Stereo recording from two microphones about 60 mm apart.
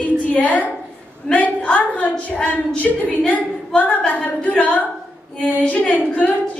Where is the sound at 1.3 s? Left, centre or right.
Left.